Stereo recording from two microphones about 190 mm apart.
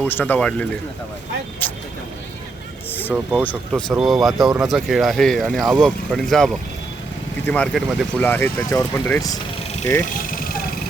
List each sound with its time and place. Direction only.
0.0 s speech: 10° left (ahead or behind)
1.6 s vehicle: 10° left (ahead or behind)
3.1 s speech: 5° right (ahead or behind)
8.2 s speech: 10° left (ahead or behind)
10.2 s vehicle: 50° left (ahead or behind)